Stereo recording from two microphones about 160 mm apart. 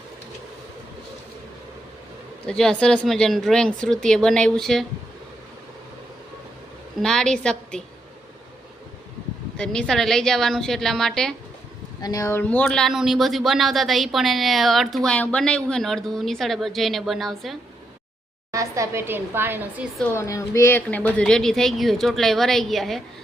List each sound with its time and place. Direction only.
2.5 s speech: 5° left (ahead or behind)
7.0 s speech: 5° left (ahead or behind)
9.6 s speech: 5° left (ahead or behind)
12.0 s speech: 20° left (ahead or behind); by 17.6 s centre (ahead or behind)
18.5 s a woman's voice: 20° right (ahead or behind)
20.1 s speech: 20° left (ahead or behind); by 23.0 s centre (ahead or behind)